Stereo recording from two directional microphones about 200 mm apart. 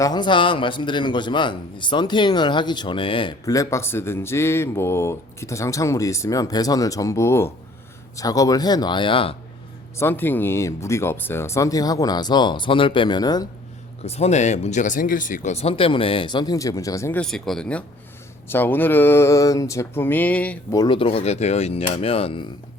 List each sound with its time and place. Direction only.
0.0 s a man's voice: 20° left (ahead or behind)
10.0 s a man's voice: 10° left (ahead or behind)
14.0 s a man's voice: 30° left (ahead or behind)